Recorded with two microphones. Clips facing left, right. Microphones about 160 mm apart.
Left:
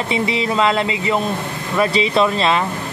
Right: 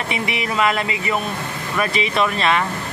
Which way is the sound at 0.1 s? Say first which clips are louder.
Left 6 dB; 30° left (ahead or behind).